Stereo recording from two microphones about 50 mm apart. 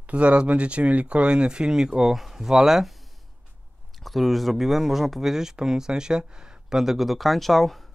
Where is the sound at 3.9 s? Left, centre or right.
Centre.